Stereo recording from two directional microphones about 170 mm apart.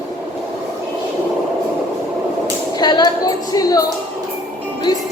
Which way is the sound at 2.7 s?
25° left (ahead or behind).